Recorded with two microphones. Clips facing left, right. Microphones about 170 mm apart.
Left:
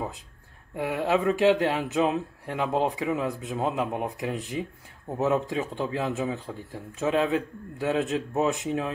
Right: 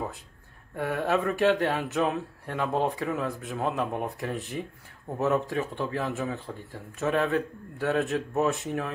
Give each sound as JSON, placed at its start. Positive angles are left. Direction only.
{"t": 0.7, "sound": "speech", "side_deg": 15}